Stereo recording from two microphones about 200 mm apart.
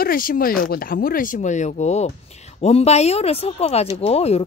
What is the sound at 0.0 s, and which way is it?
Speech, 45° left (ahead or behind).